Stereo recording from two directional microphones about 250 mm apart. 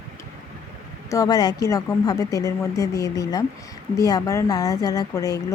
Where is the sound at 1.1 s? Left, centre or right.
Centre.